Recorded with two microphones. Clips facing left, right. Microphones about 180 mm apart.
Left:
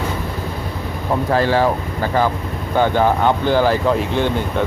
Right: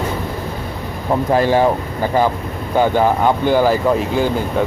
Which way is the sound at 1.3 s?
15° right (ahead or behind).